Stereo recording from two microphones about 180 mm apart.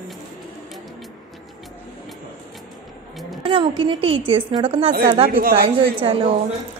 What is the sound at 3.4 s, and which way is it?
A woman's voice, 30° right (ahead or behind).